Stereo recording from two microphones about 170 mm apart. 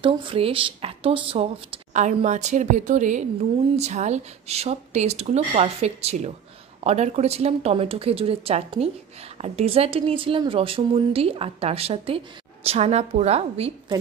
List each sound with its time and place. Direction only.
0.0 s speech: 30° right (ahead or behind)